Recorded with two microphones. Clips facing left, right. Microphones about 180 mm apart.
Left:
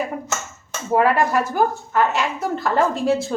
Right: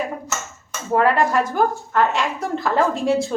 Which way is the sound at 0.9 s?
5° left (ahead or behind).